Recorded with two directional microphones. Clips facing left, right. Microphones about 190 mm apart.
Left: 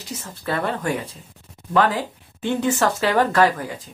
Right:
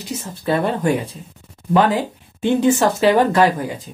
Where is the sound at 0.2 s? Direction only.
20° right (ahead or behind).